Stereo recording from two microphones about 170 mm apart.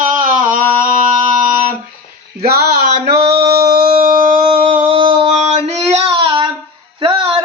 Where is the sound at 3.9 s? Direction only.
55° right (ahead or behind).